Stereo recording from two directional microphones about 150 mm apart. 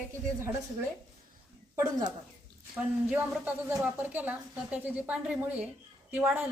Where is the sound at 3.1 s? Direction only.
10° right (ahead or behind).